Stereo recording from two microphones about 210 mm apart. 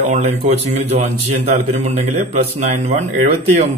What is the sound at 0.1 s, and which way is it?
A man's voice, 35° right (ahead or behind).